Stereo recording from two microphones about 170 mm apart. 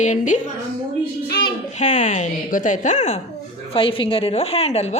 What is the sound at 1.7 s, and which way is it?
Speech, 45° left (ahead or behind).